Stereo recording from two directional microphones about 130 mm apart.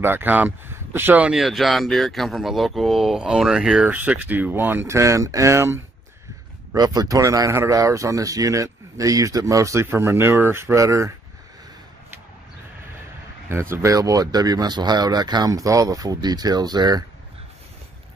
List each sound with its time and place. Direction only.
0.0 s speech: 15° right (ahead or behind)
13.5 s speech: 20° right (ahead or behind)